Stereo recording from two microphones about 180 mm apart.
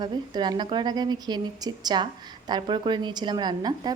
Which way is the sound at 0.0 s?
25° right (ahead or behind).